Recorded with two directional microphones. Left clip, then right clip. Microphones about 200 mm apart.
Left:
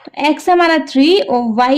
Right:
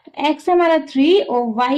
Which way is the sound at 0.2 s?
40° left (ahead or behind).